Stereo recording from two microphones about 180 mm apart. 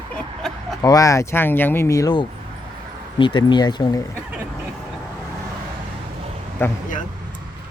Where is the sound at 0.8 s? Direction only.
20° left (ahead or behind).